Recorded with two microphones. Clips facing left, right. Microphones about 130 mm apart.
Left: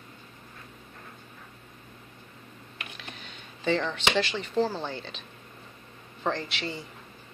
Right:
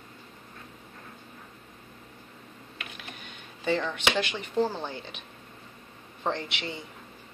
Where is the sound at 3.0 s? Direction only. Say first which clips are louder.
Even; 10° right (ahead or behind).